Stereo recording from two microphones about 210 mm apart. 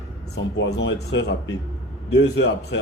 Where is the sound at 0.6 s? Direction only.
70° left (ahead or behind).